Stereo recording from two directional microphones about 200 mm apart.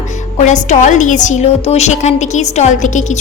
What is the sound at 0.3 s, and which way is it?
A woman's voice, 35° left (ahead or behind).